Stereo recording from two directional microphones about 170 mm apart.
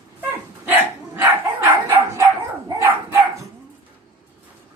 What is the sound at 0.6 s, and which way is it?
Dog, 10° right (ahead or behind).